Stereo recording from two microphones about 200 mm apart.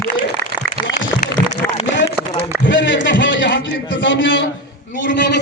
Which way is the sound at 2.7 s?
65° left (ahead or behind).